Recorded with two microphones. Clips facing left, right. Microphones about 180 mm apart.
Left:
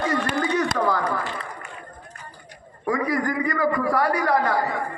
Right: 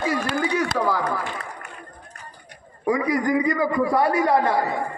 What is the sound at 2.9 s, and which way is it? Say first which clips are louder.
A man's voice: right 3 dB; 20° right (ahead or behind).